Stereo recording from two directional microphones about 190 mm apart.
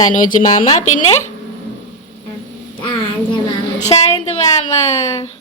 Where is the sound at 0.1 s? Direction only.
45° left (ahead or behind).